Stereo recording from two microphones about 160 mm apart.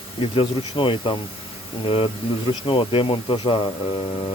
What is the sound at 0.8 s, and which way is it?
Speech, 30° left (ahead or behind).